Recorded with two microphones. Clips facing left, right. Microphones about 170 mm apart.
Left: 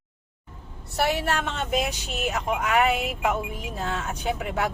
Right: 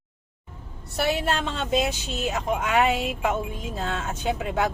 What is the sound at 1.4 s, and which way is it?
A man's voice, 30° right (ahead or behind).